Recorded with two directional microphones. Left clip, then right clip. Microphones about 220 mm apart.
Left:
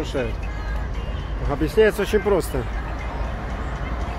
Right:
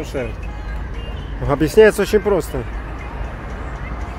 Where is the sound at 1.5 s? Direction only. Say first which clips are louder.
Right 7 dB; 40° right (ahead or behind); by 2.4 s 20° right (ahead or behind).